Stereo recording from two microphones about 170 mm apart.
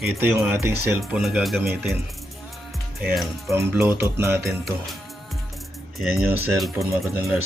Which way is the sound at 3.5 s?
15° right (ahead or behind).